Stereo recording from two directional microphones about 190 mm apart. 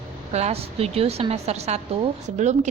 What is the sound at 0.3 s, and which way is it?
A woman's voice, 35° right (ahead or behind).